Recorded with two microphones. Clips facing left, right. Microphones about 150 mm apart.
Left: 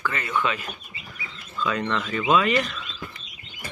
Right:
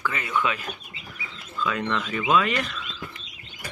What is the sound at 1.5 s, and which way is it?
Speech, 5° right (ahead or behind).